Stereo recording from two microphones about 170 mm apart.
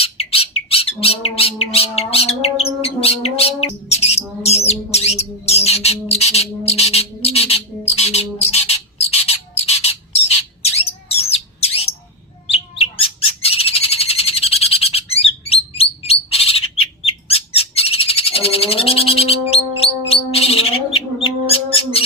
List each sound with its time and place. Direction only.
0.0 s squawk: 35° left (ahead or behind)
12.5 s bird: 35° left (ahead or behind)